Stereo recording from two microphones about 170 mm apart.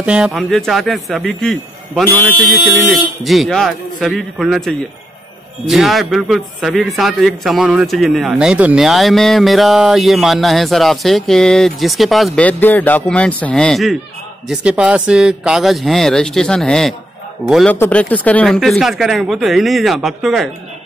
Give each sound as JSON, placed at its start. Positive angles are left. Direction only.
{"t": 0.0, "sound": "speech", "side_deg": -5}
{"t": 17.7, "sound": "speech", "side_deg": 10}